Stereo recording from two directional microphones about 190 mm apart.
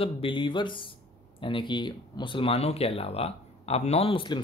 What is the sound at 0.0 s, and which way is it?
A man's voice, 25° left (ahead or behind).